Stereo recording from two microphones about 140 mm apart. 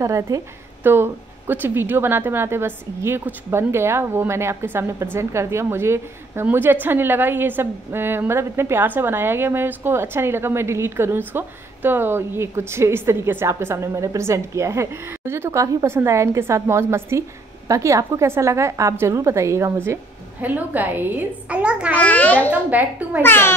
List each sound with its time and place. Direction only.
0.0 s a woman's voice: 20° right (ahead or behind)
21.9 s a child's voice: 10° left (ahead or behind)
22.5 s a woman's voice: 10° right (ahead or behind)
23.2 s a child's voice: 15° left (ahead or behind)